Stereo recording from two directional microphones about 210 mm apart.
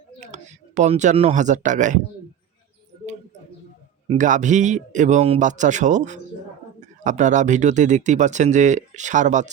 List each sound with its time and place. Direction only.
0.2 s speech: 35° right (ahead or behind)
4.1 s speech: 35° right (ahead or behind)